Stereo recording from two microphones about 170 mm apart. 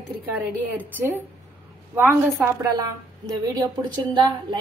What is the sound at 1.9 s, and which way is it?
Speech, 10° right (ahead or behind).